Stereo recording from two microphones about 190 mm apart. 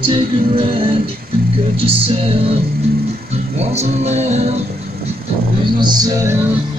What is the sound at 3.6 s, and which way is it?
Music, 35° right (ahead or behind).